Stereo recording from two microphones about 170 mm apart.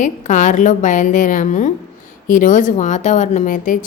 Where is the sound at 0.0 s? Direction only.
45° left (ahead or behind).